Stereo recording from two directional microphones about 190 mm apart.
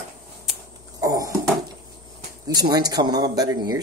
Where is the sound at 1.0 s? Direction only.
20° right (ahead or behind).